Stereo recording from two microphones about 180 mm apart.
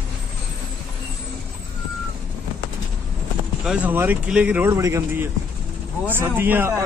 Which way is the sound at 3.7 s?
10° right (ahead or behind).